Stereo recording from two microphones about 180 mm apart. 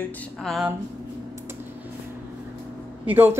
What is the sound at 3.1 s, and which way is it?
Speech, 10° right (ahead or behind).